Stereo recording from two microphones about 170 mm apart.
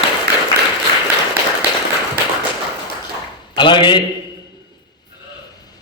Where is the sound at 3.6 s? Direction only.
25° left (ahead or behind).